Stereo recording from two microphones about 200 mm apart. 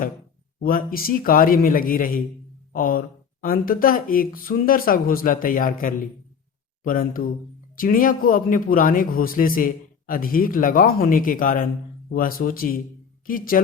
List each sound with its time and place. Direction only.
0.6 s speech: 45° left (ahead or behind)